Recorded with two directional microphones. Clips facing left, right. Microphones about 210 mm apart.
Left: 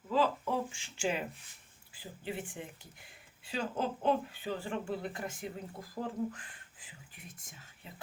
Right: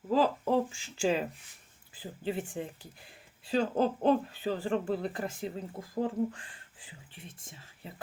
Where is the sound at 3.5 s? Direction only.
35° right (ahead or behind).